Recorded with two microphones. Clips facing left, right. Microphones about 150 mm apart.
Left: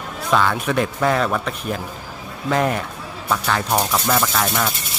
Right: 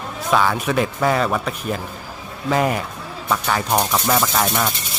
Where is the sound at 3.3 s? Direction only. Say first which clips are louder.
Even; 5° right (ahead or behind).